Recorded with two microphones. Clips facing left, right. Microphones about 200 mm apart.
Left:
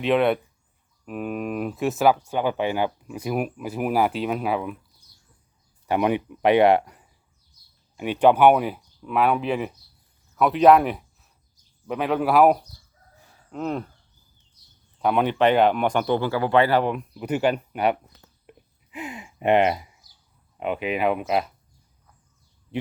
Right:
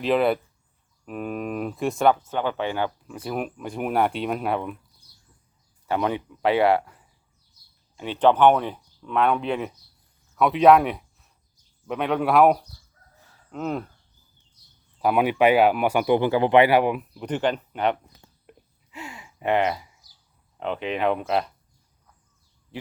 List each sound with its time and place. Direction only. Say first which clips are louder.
0.0 s speech: left 1 dB; centre (ahead or behind)
5.8 s speech: left 3 dB; 15° left (ahead or behind); by 13.8 s centre (ahead or behind)
15.0 s speech: right 1 dB; 5° right (ahead or behind)
17.2 s speech: left 2 dB; 10° left (ahead or behind)
18.9 s gasp: left 5 dB; 20° left (ahead or behind)
20.6 s speech: left 1 dB; 10° left (ahead or behind)